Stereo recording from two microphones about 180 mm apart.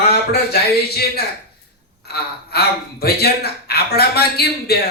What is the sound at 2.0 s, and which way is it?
Speech, 60° left (ahead or behind).